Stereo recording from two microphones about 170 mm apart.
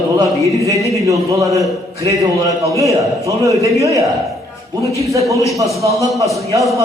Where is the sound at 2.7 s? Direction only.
20° right (ahead or behind).